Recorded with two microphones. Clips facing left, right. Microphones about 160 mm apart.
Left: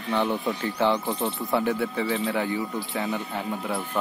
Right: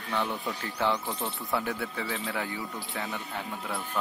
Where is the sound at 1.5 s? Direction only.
Centre (ahead or behind).